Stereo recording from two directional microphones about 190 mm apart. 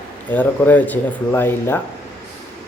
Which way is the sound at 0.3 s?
10° left (ahead or behind).